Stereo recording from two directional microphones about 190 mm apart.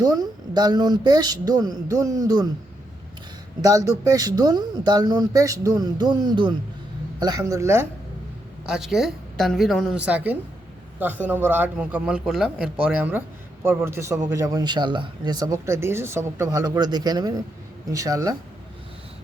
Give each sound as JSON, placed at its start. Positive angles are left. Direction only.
{"t": 0.0, "sound": "speech", "side_deg": -20}
{"t": 3.6, "sound": "speech", "side_deg": -15}
{"t": 8.6, "sound": "a woman's voice", "side_deg": -5}